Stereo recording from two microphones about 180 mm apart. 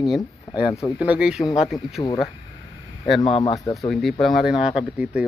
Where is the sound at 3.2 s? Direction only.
30° left (ahead or behind).